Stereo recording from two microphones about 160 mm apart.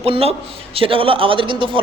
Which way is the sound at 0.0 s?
40° right (ahead or behind).